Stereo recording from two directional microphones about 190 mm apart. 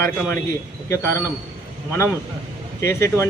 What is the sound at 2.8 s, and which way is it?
Speech, 15° left (ahead or behind).